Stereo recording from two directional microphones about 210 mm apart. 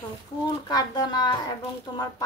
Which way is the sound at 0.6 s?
20° left (ahead or behind).